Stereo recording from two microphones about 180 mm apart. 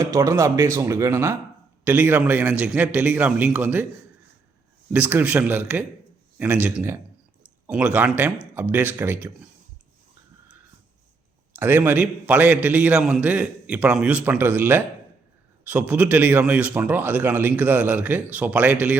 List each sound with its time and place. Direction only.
0.0 s speech: 20° right (ahead or behind)
4.9 s speech: 10° right (ahead or behind)
11.5 s speech: 10° right (ahead or behind)